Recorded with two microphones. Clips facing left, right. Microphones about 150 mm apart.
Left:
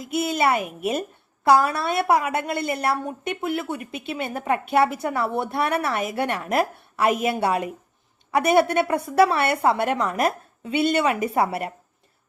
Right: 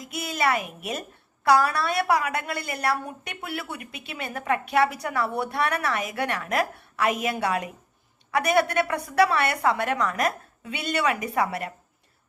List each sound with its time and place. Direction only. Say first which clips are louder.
0.1 s a woman's voice: left 4 dB; 25° left (ahead or behind)